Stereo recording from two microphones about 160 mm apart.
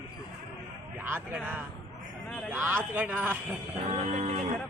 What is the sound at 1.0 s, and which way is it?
Speech, 10° right (ahead or behind).